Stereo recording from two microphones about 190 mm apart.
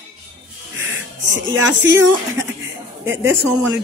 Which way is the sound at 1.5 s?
85° right.